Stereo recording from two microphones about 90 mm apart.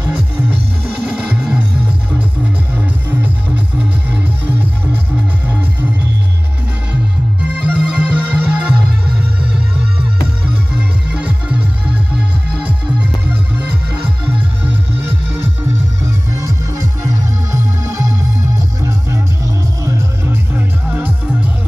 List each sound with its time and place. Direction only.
1.0 s music: 15° right (ahead or behind)
7.6 s music: 10° right (ahead or behind)
10.8 s music: 15° right (ahead or behind)
16.3 s music: 40° right (ahead or behind)
20.2 s music: 20° right (ahead or behind)